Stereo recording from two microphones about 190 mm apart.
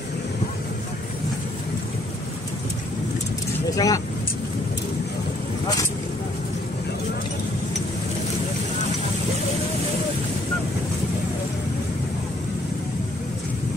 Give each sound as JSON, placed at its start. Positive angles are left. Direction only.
{"t": 3.7, "sound": "speech", "side_deg": 20}